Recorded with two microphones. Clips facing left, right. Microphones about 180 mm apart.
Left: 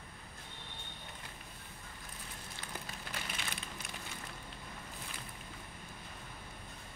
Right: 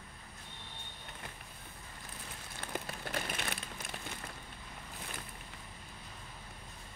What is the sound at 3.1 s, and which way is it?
Crushing, 50° right (ahead or behind).